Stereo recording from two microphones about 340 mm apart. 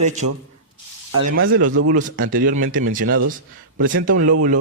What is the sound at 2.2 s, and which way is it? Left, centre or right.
Speech, right.